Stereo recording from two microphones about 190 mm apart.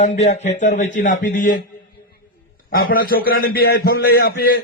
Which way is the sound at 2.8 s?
50° left (ahead or behind).